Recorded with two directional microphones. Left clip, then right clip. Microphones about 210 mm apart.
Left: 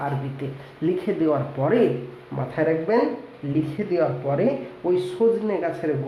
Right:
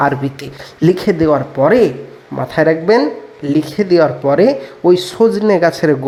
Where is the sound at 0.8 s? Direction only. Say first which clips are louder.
Right 10 dB; 35° right (ahead or behind).